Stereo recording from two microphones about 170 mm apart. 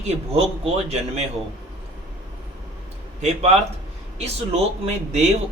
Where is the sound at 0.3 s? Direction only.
35° right (ahead or behind).